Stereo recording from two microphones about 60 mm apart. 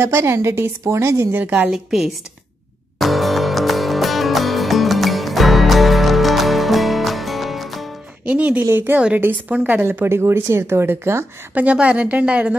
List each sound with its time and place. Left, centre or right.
0.0 s a woman's voice: right
1.3 s a woman's voice: right
1.7 s a woman's voice: centre
3.0 s music: centre
8.3 s a woman's voice: right
8.6 s a woman's voice: right
9.3 s a woman's voice: right
10.0 s a woman's voice: right
11.5 s a woman's voice: right